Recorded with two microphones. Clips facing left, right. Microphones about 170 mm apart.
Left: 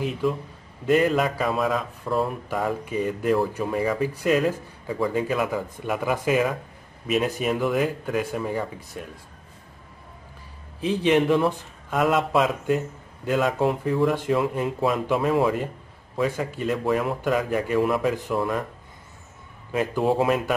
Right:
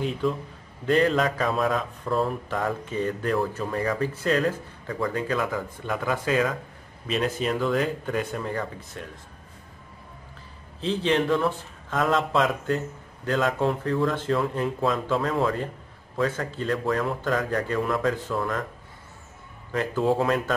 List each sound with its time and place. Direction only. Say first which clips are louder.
0.0 s speech: left 1 dB; 5° left (ahead or behind)
10.8 s speech: left 3 dB; 15° left (ahead or behind)
18.1 s speech: left 3 dB; 20° left (ahead or behind)
19.7 s a man's voice: left 1 dB; 15° left (ahead or behind)